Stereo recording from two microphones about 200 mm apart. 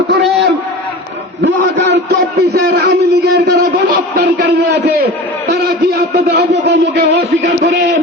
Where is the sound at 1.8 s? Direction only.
55° right (ahead or behind).